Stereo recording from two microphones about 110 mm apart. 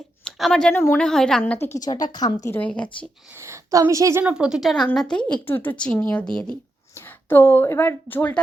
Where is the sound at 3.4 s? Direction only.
25° right (ahead or behind).